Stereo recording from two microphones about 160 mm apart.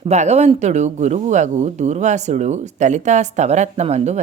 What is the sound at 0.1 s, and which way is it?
Speech, 45° right (ahead or behind).